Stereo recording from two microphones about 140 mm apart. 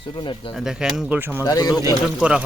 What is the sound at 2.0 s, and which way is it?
Speech, 5° right (ahead or behind).